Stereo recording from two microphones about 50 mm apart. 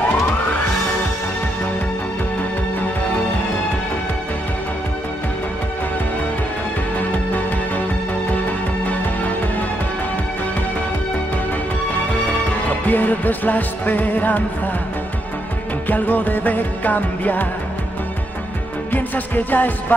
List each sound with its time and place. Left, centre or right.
12.6 s music: left
15.9 s music: left
18.9 s music: left